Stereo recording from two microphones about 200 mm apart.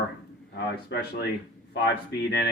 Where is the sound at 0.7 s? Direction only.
55° left (ahead or behind).